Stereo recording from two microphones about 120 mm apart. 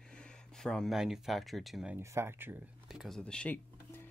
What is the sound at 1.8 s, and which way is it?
Speech, 20° right (ahead or behind).